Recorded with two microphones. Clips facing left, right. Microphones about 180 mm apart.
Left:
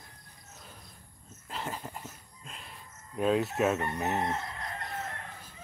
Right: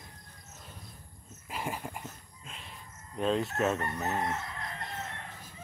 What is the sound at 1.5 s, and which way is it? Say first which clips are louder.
Dog: right 1 dB; 10° right (ahead or behind).